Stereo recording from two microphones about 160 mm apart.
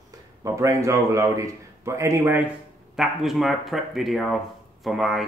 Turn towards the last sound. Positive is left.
turn(degrees=0)  # may be behind; listen again after turning